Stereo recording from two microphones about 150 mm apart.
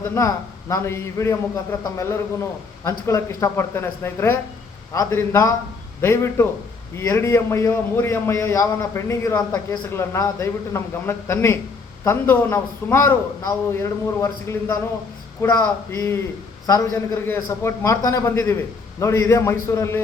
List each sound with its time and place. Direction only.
0.0 s a man's voice: 20° left (ahead or behind)